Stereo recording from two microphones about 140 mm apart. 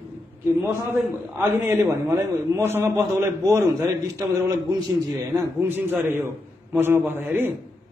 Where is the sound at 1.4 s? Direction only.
20° right (ahead or behind).